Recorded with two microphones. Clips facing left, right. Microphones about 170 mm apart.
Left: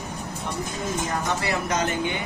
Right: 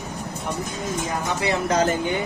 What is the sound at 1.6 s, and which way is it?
Speech, 35° right (ahead or behind).